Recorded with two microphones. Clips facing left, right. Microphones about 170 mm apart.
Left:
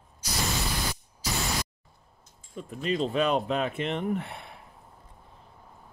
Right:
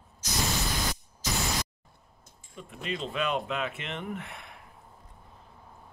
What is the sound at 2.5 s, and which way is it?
Speech, 40° left (ahead or behind).